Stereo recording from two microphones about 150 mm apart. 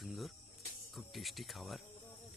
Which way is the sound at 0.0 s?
Centre (ahead or behind).